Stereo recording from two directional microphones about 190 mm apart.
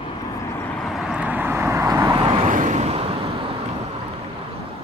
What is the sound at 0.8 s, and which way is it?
Vehicle, 5° right (ahead or behind).